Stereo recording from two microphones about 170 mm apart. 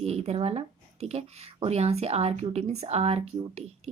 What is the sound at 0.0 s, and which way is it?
Speech, 35° right (ahead or behind).